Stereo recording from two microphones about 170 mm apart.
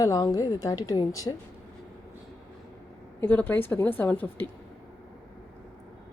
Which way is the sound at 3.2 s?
10° left (ahead or behind).